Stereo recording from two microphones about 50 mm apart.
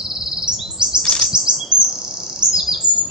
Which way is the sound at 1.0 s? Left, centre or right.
Centre.